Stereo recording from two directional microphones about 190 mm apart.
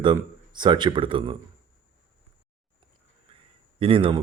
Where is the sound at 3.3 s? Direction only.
30° right (ahead or behind).